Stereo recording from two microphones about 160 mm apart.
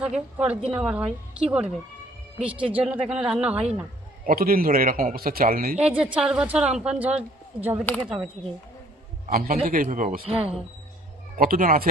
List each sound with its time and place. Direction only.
0.0 s speech: 5° right (ahead or behind)
2.6 s speech: 35° right (ahead or behind)
3.1 s speech: 5° right (ahead or behind)
4.3 s a man's voice: 65° right (ahead or behind)
5.8 s a woman's voice: 5° right (ahead or behind)
9.3 s a man's voice: 65° right (ahead or behind)
10.2 s speech: 35° right (ahead or behind)
11.3 s a man's voice: 60° right (ahead or behind)